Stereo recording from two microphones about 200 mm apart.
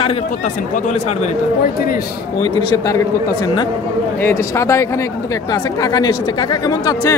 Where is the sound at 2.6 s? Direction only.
20° left (ahead or behind).